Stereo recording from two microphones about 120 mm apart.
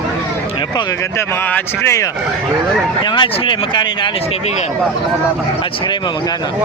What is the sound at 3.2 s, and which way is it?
Speech, 40° left (ahead or behind).